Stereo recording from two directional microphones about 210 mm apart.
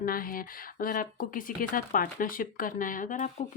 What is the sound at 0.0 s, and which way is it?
Speech, 45° left (ahead or behind).